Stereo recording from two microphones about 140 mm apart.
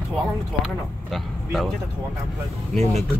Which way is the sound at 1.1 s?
Centre (ahead or behind).